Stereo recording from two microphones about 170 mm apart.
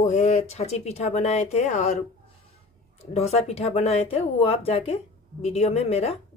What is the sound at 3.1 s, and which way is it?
Speech, 40° left (ahead or behind).